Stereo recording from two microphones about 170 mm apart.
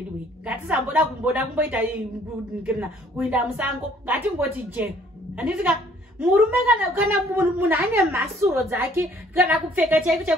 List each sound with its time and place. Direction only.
0.5 s a woman's voice: 5° right (ahead or behind)